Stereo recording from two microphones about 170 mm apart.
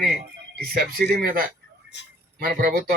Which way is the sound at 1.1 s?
65° right (ahead or behind).